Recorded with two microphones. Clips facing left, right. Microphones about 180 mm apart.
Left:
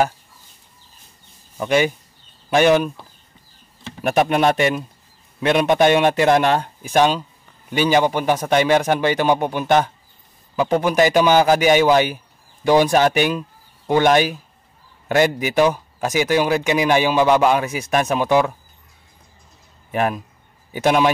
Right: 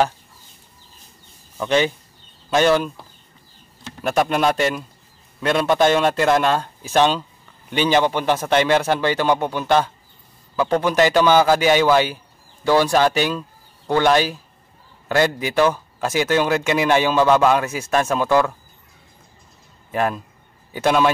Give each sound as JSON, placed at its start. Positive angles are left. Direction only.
{"t": 1.6, "sound": "speech", "side_deg": 10}
{"t": 4.0, "sound": "speech", "side_deg": 15}
{"t": 19.9, "sound": "speech", "side_deg": 15}